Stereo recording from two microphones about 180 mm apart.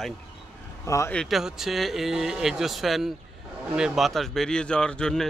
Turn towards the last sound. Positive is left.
turn(degrees=5)  # may be behind; listen again after turning